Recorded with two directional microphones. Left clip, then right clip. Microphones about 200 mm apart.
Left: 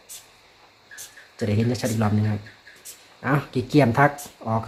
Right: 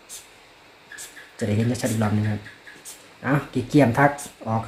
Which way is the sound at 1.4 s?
30° left (ahead or behind).